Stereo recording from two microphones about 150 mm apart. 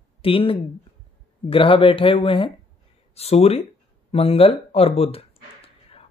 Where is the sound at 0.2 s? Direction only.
35° left (ahead or behind).